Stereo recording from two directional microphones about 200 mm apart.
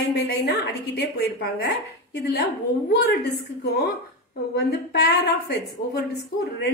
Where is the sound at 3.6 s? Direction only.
55° left (ahead or behind).